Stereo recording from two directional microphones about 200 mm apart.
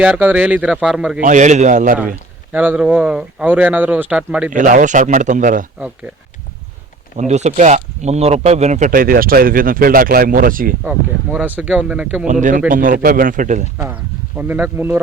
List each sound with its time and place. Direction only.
0.0 s speech: 10° right (ahead or behind)
1.2 s speech: 40° right (ahead or behind)
2.5 s speech: 10° right (ahead or behind)
4.5 s speech: 40° right (ahead or behind)
7.2 s speech: 35° right (ahead or behind)
10.8 s speech: 5° right (ahead or behind)
12.3 s speech: 40° right (ahead or behind)
13.7 s speech: 10° right (ahead or behind)